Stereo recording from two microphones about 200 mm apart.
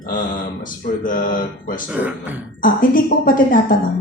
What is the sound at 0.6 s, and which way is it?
A woman's voice, 45° left (ahead or behind).